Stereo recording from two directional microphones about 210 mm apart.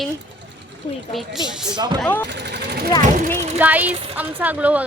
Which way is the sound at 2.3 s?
55° right (ahead or behind).